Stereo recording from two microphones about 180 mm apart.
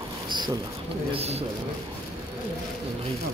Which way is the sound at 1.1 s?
35° right (ahead or behind).